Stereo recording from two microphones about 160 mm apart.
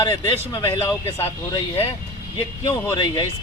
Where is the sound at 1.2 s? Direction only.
30° left (ahead or behind).